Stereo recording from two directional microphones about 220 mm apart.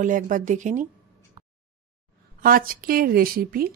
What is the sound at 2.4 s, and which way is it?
Speech, 40° right (ahead or behind).